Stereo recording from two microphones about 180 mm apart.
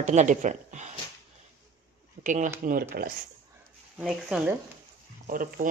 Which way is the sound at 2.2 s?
45° right (ahead or behind).